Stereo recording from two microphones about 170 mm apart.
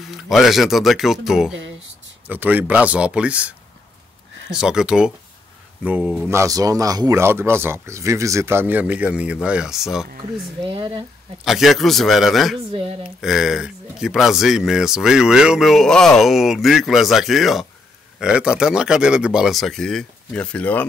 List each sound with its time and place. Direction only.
0.0 s a man's voice: centre (ahead or behind)
10.6 s speech: 30° right (ahead or behind)
11.4 s speech: centre (ahead or behind)
12.7 s speech: 35° right (ahead or behind)
13.0 s speech: 5° right (ahead or behind)